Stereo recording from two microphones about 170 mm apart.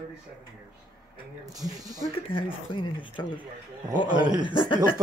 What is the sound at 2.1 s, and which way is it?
Speech, 30° left (ahead or behind).